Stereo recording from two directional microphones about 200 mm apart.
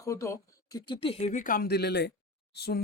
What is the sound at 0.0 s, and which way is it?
Speech, 15° left (ahead or behind).